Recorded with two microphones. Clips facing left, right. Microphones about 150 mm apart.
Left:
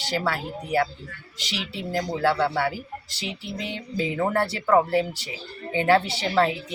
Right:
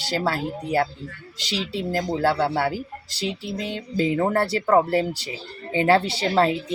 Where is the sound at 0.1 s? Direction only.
35° right (ahead or behind).